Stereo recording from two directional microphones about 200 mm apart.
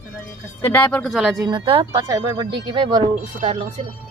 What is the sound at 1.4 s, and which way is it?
Speech, 25° right (ahead or behind).